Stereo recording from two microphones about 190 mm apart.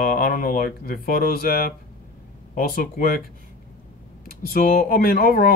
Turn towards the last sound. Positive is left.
turn(degrees=50)  # may be behind; listen again after turning